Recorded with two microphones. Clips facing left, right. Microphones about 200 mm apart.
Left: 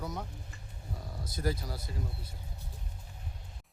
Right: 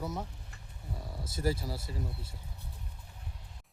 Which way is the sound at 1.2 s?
25° right (ahead or behind).